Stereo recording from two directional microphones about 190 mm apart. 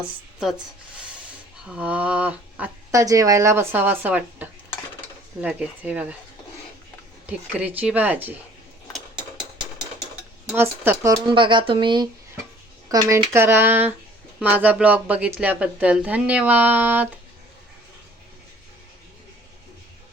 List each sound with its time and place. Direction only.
1.6 s speech: 5° right (ahead or behind)
7.3 s speech: 10° right (ahead or behind)
10.5 s speech: 10° right (ahead or behind)
12.9 s speech: 15° right (ahead or behind)